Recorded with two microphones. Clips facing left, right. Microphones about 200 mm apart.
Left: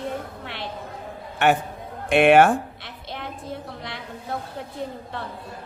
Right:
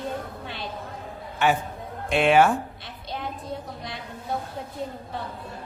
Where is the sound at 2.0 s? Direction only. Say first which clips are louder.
Left 4 dB; 65° left (ahead or behind).